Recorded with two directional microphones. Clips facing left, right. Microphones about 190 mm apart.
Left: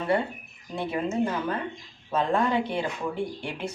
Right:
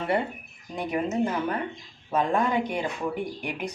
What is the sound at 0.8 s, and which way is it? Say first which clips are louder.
Speech: right 1 dB; 15° right (ahead or behind).